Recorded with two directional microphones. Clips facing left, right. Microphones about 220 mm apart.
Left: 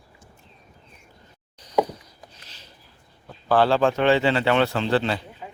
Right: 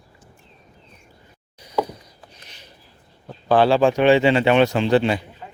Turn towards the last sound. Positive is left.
turn(degrees=-15)  # may be behind; listen again after turning